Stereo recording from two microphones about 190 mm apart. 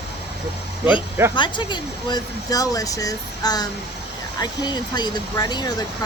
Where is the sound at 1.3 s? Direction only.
25° left (ahead or behind).